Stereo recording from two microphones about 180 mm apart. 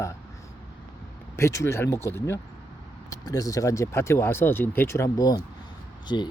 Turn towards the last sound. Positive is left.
turn(degrees=25)  # may be behind; listen again after turning